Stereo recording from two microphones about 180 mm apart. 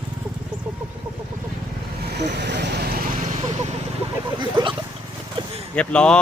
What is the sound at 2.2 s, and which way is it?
Vehicle, 70° right (ahead or behind).